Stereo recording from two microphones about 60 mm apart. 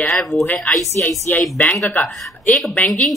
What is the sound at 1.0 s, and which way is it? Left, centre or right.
A woman's voice, left.